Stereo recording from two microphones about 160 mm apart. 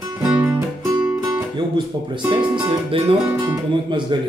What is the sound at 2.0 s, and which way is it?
Speech, 30° right (ahead or behind).